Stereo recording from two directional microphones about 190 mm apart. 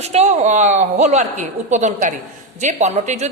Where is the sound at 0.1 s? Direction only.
35° right (ahead or behind).